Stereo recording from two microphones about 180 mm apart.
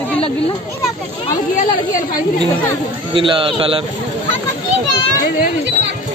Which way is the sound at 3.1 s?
30° right (ahead or behind).